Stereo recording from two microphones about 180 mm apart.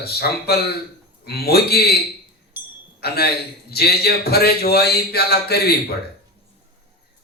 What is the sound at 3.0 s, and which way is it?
A man's voice, 60° left (ahead or behind).